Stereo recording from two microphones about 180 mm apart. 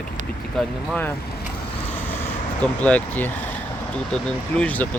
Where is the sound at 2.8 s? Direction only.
10° left (ahead or behind).